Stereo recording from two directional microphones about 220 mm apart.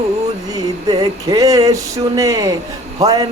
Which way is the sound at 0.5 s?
15° right (ahead or behind).